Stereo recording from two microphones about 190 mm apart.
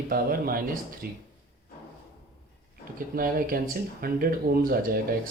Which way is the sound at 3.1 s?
50° right (ahead or behind).